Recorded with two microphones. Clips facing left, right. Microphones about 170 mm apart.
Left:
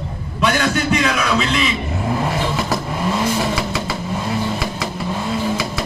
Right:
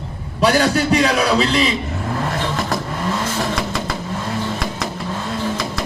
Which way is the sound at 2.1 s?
10° left (ahead or behind).